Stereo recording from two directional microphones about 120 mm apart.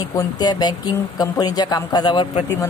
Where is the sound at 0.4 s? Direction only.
35° left (ahead or behind).